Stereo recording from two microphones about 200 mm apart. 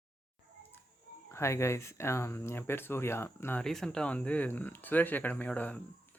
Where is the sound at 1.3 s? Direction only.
15° left (ahead or behind).